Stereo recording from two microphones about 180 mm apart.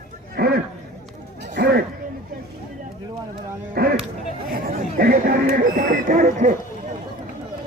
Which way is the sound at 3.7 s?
55° right (ahead or behind).